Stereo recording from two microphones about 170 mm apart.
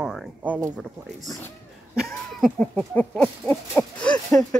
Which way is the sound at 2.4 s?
5° left (ahead or behind).